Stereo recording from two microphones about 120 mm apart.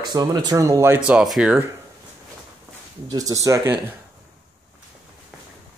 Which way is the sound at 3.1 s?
30° right (ahead or behind).